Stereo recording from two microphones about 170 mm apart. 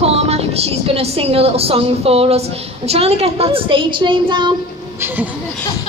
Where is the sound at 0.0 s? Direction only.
40° right (ahead or behind).